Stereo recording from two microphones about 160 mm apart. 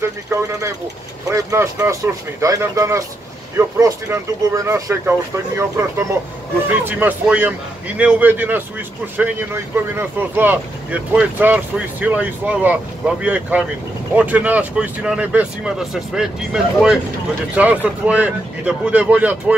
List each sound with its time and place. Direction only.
0.0 s speech: 20° right (ahead or behind)
6.8 s speech: 10° right (ahead or behind)